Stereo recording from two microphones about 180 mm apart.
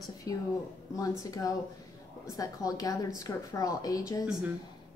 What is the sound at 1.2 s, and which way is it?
A woman's voice, 20° left (ahead or behind).